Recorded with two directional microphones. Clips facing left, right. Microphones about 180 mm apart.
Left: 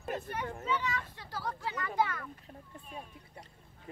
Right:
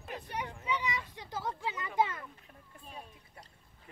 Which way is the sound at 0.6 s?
15° right (ahead or behind).